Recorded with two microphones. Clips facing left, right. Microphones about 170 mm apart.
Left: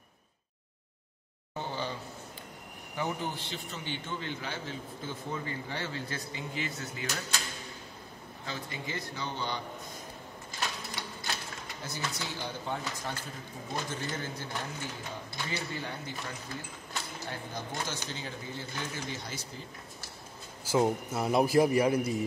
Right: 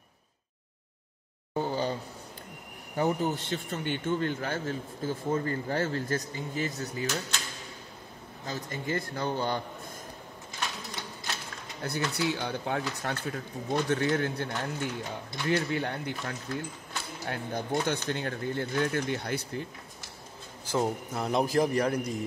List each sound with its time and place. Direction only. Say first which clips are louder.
1.6 s a sound: right 6 dB; 40° right (ahead or behind)
3.0 s a man's voice: right 7 dB; 45° right (ahead or behind)
8.5 s a man's voice: right 5 dB; 45° right (ahead or behind)
11.8 s speech: right 9 dB; 60° right (ahead or behind)
20.6 s a man's voice: left 2 dB; 5° left (ahead or behind)